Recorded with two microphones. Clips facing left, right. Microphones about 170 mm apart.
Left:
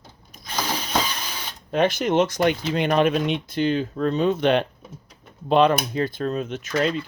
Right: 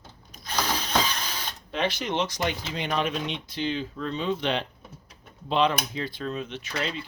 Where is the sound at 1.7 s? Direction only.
50° left (ahead or behind).